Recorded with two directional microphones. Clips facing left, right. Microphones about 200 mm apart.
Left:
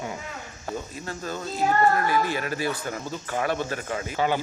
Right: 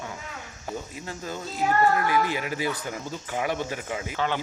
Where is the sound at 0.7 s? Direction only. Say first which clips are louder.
Left 2 dB; 15° right (ahead or behind).